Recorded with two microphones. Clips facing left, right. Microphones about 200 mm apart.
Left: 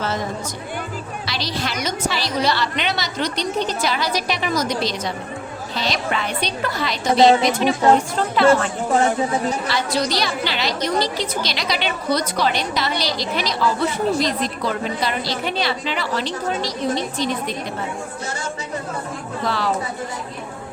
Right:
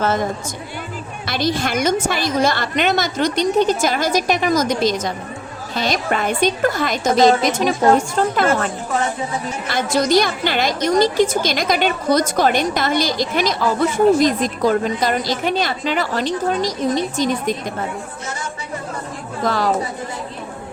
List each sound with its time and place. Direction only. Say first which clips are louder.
0.0 s a woman's voice: right 5 dB; 50° right (ahead or behind)
1.3 s a woman's voice: right 7 dB; 50° right (ahead or behind)
9.6 s a woman's voice: right 4 dB; 50° right (ahead or behind)
19.5 s a woman's voice: right 4 dB; 45° right (ahead or behind)